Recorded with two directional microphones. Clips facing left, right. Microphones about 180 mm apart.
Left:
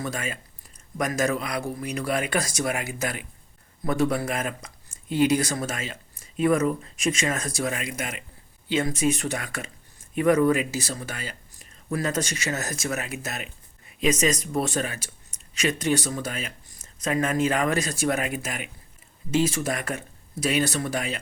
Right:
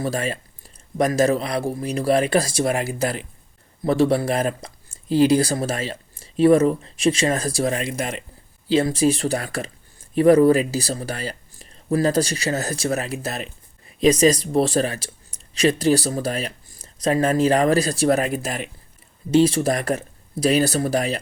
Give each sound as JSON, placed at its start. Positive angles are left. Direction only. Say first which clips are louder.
{"t": 0.0, "sound": "speech", "louder": "right 7 dB", "side_deg": -35}